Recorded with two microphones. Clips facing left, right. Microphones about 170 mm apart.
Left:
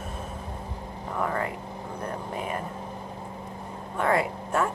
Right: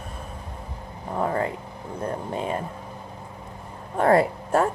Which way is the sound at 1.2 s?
30° right (ahead or behind).